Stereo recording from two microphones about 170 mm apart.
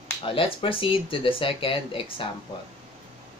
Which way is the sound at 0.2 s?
30° left (ahead or behind).